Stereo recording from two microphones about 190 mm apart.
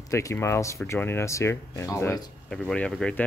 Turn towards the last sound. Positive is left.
turn(degrees=5)  # may be behind; listen again after turning